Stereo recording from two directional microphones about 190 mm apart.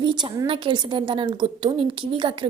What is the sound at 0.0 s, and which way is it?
Speech, 25° right (ahead or behind).